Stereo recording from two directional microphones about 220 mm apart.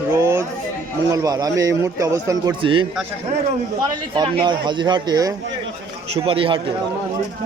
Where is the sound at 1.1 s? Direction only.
15° right (ahead or behind).